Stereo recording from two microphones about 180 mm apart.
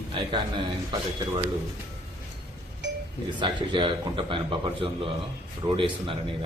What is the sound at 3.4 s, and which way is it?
A man's voice, 25° right (ahead or behind).